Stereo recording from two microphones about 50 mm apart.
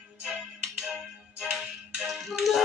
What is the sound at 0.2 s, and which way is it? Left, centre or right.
Music, centre.